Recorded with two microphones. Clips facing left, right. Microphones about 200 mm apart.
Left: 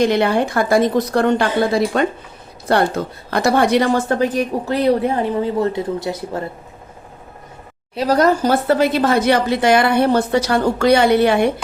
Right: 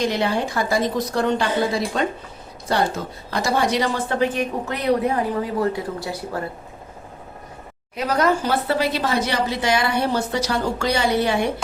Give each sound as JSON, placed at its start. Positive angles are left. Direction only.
{"t": 0.0, "sound": "a woman's voice", "side_deg": 60}
{"t": 7.9, "sound": "speech", "side_deg": 35}